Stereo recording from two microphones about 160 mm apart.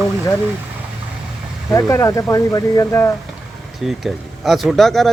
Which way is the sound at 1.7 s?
20° left (ahead or behind).